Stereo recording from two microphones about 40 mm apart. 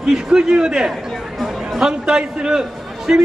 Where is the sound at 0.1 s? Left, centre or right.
Centre.